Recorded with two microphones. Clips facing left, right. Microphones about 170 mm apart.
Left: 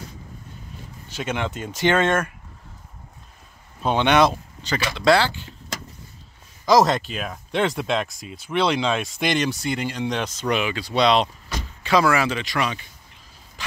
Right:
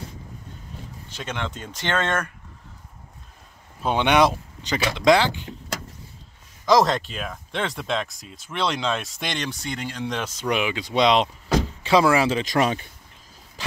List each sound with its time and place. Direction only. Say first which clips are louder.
1.1 s speech: left 4 dB; 10° left (ahead or behind)
3.8 s speech: left 1 dB; 10° right (ahead or behind)
6.6 s speech: left 1 dB; 5° left (ahead or behind); by 12.4 s 30° right (ahead or behind)
12.4 s speech: right 4 dB; 40° right (ahead or behind)